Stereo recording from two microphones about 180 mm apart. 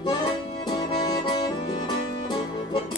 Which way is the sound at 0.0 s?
25° left (ahead or behind).